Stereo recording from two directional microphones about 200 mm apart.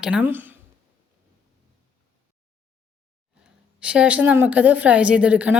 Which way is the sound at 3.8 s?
5° right (ahead or behind).